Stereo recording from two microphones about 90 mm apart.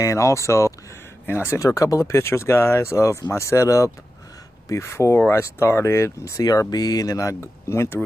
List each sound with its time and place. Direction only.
0.0 s speech: 35° left (ahead or behind)
1.8 s speech: 35° left (ahead or behind)